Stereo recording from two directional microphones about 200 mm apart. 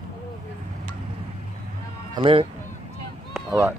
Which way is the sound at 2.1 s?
25° right (ahead or behind).